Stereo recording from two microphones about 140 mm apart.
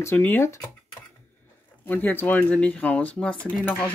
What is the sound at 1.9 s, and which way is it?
A woman's voice, 15° left (ahead or behind).